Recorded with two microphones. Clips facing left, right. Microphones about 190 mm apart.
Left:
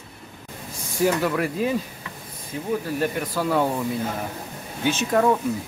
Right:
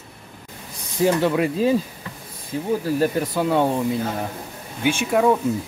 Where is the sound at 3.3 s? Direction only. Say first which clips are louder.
Right 3 dB; 20° right (ahead or behind).